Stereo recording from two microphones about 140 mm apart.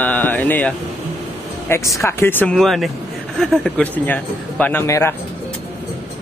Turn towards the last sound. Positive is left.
turn(degrees=20)  # may be behind; listen again after turning